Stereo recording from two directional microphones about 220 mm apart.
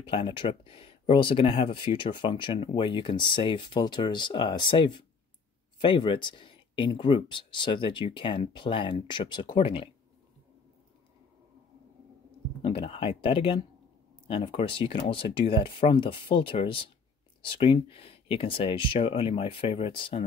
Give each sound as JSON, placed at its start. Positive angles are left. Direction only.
{"t": 0.0, "sound": "speech", "side_deg": 25}
{"t": 12.6, "sound": "speech", "side_deg": 25}